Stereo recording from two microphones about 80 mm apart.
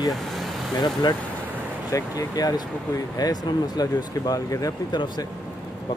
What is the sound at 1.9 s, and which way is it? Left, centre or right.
Speech, left.